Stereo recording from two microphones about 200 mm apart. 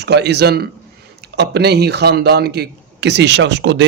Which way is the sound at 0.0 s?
55° right (ahead or behind).